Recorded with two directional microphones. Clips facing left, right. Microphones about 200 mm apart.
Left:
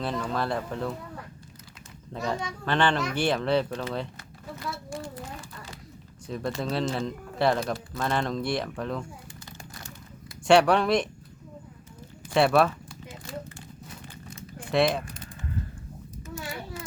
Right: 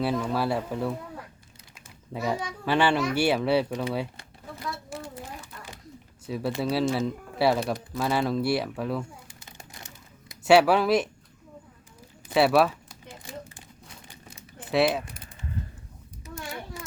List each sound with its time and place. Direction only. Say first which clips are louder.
0.0 s speech: right 3 dB; 10° right (ahead or behind)
6.2 s speech: right 2 dB; 5° right (ahead or behind)
9.7 s typing: left 3 dB; 20° right (ahead or behind)
10.4 s speech: right 1 dB; 5° right (ahead or behind)
12.3 s a sound: right 1 dB; 5° right (ahead or behind)
14.7 s speech: even; 5° right (ahead or behind)